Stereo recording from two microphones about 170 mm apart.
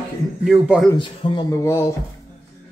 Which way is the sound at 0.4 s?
Centre (ahead or behind).